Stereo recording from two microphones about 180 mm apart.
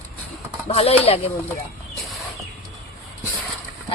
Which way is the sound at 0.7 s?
35° left (ahead or behind).